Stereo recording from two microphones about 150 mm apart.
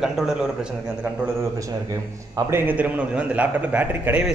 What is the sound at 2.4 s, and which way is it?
A man's voice, 15° right (ahead or behind).